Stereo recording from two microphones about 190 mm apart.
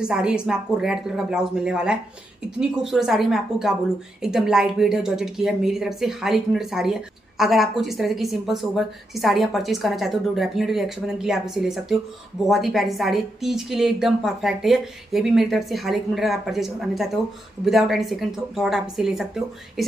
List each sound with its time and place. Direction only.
0.0 s a woman's voice: 5° right (ahead or behind)